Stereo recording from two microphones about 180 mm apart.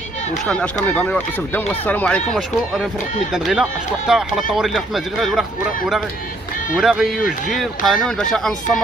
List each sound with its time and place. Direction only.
0.5 s speech: 5° left (ahead or behind)
3.3 s speech: 5° right (ahead or behind)
6.8 s speech: 5° right (ahead or behind)